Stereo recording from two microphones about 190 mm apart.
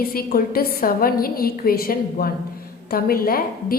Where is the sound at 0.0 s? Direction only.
50° left (ahead or behind).